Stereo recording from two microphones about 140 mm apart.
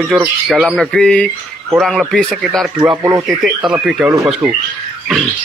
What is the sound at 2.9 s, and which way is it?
Speech, 25° right (ahead or behind).